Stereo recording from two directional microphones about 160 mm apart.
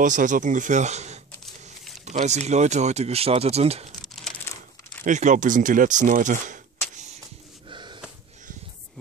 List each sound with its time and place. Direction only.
0.0 s speech: 55° right (ahead or behind)
4.0 s a sound: centre (ahead or behind)
5.0 s speech: 50° right (ahead or behind)
7.6 s wheeze: 30° right (ahead or behind)